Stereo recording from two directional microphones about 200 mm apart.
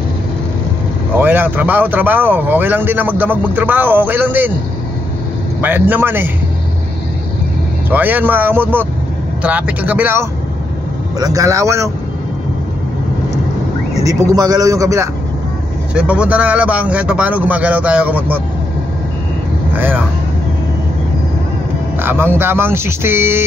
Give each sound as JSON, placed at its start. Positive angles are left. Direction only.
{"t": 1.1, "sound": "speech", "side_deg": -10}
{"t": 5.6, "sound": "speech", "side_deg": -10}
{"t": 7.9, "sound": "speech", "side_deg": -10}
{"t": 13.9, "sound": "speech", "side_deg": -20}
{"t": 15.9, "sound": "speech", "side_deg": -5}
{"t": 19.7, "sound": "speech", "side_deg": -10}
{"t": 22.0, "sound": "speech", "side_deg": -10}